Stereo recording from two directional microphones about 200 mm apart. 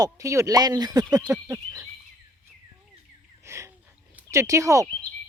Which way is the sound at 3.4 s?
15° right (ahead or behind).